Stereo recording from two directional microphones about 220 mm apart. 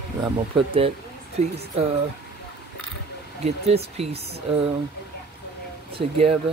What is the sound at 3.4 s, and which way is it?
Speech, 30° right (ahead or behind).